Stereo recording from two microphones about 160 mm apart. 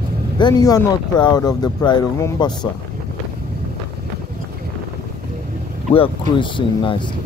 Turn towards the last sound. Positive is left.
turn(degrees=30)  # may be behind; listen again after turning